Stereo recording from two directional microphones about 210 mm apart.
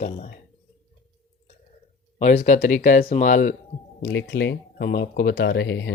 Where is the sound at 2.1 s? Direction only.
35° left (ahead or behind).